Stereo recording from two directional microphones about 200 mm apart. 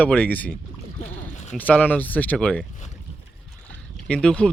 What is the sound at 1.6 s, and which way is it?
Speech, 10° left (ahead or behind).